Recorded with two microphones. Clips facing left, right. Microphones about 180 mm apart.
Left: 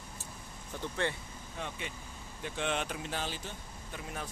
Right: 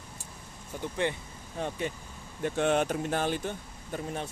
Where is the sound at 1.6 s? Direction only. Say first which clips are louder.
Right 9 dB; 40° right (ahead or behind).